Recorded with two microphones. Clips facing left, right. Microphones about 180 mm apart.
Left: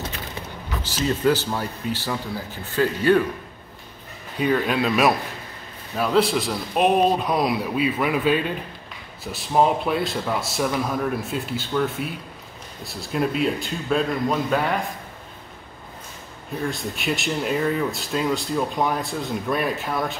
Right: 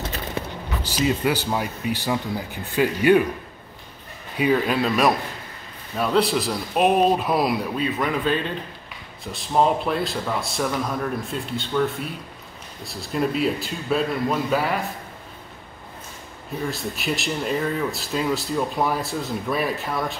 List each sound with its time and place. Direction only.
0.9 s speech: 10° right (ahead or behind)
4.4 s speech: 5° right (ahead or behind)
7.7 s speech: 10° left (ahead or behind)
16.7 s speech: centre (ahead or behind)